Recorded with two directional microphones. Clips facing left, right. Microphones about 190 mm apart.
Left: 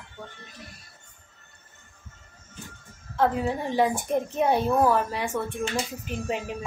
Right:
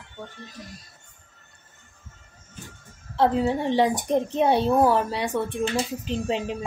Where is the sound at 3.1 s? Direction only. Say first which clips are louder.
Right 3 dB; 25° right (ahead or behind).